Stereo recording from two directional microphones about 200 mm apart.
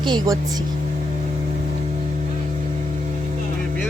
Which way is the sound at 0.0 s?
20° right (ahead or behind).